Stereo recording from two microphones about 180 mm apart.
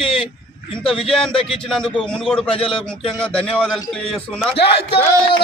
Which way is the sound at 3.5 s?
Centre (ahead or behind).